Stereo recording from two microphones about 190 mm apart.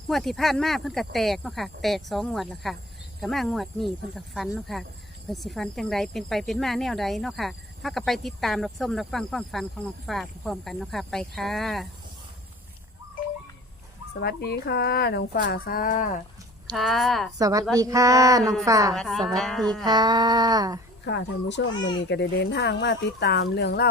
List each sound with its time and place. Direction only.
0.1 s speech: centre (ahead or behind)
14.2 s speech: 60° left (ahead or behind)
16.7 s speech: centre (ahead or behind)
17.3 s a sound: 20° right (ahead or behind)
18.9 s speech: centre (ahead or behind)
19.8 s speech: 20° right (ahead or behind)
21.0 s speech: 65° left (ahead or behind)